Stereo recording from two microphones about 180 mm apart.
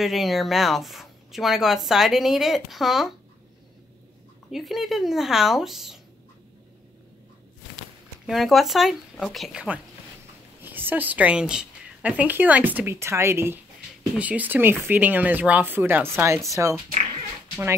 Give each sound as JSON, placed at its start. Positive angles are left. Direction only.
{"t": 0.0, "sound": "speech", "side_deg": 0}
{"t": 4.5, "sound": "speech", "side_deg": 0}
{"t": 8.3, "sound": "a woman's voice", "side_deg": 0}